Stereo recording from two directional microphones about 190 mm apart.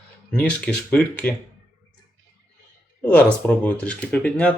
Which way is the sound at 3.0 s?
5° left (ahead or behind).